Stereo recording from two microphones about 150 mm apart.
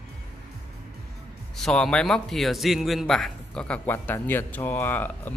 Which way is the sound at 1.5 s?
Centre (ahead or behind).